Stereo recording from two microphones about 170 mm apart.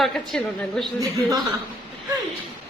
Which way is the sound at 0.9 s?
20° right (ahead or behind).